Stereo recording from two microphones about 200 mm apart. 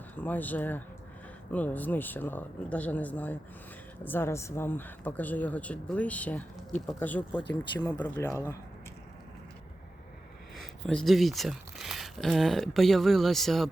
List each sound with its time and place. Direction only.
0.2 s speech: 10° left (ahead or behind)
7.7 s speech: 20° left (ahead or behind)
7.9 s speech: 10° left (ahead or behind)
10.6 s speech: centre (ahead or behind)